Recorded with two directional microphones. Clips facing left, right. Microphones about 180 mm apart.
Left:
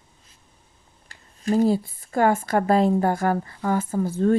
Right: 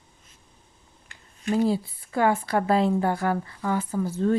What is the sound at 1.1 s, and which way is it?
Speech, 40° left (ahead or behind).